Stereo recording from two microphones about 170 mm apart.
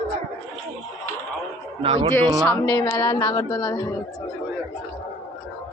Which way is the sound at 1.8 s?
35° right (ahead or behind).